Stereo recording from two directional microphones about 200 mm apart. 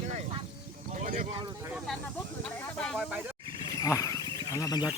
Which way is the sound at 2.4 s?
5° left (ahead or behind).